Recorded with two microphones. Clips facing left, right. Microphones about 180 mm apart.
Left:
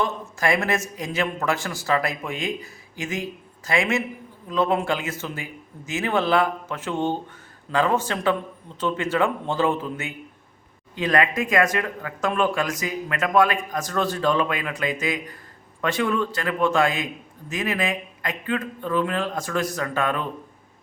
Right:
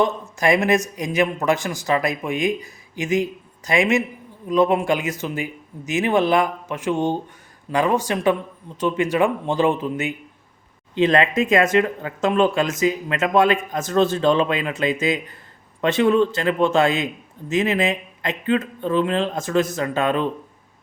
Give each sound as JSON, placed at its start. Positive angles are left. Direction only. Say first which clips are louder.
{"t": 0.0, "sound": "a man's voice", "louder": "right 5 dB", "side_deg": -20}